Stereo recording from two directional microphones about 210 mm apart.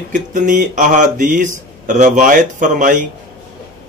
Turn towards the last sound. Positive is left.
turn(degrees=-40)  # may be behind; listen again after turning